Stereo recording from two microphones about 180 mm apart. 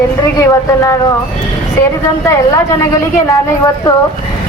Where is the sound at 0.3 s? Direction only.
20° left (ahead or behind).